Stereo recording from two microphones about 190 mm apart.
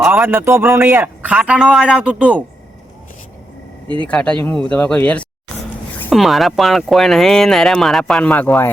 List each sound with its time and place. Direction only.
0.0 s a man's voice: 10° right (ahead or behind)
4.0 s speech: 5° left (ahead or behind)